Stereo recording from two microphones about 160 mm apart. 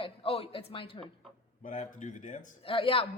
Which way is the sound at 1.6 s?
50° left (ahead or behind).